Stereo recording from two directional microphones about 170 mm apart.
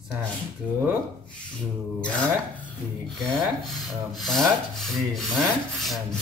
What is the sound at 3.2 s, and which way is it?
Rub, centre (ahead or behind).